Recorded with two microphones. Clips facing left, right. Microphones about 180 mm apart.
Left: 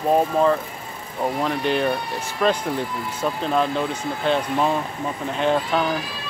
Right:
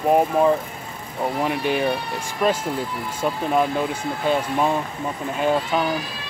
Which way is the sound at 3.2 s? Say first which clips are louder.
Right 1 dB; 10° right (ahead or behind).